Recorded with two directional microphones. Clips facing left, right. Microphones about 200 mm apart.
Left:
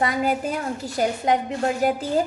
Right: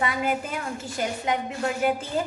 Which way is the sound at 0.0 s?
40° left (ahead or behind).